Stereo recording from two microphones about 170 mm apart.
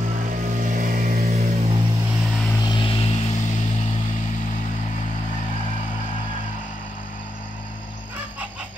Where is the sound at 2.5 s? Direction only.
25° left (ahead or behind); by 5.1 s 45° left (ahead or behind).